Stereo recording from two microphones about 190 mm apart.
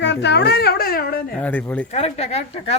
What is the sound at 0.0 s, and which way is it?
A child's voice, 65° left (ahead or behind).